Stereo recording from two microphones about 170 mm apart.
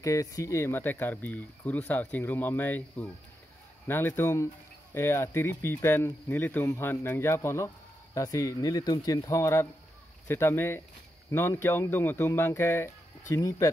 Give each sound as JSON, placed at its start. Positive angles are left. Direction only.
{"t": 0.0, "sound": "speech", "side_deg": 20}